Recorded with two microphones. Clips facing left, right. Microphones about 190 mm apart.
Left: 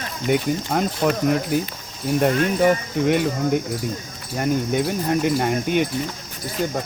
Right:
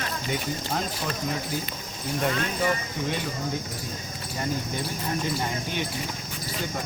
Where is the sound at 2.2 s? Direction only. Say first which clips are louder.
Left 9 dB; 50° left (ahead or behind); by 3.6 s 65° left (ahead or behind).